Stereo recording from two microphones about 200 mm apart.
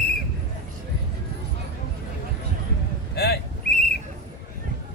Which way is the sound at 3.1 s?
55° left (ahead or behind).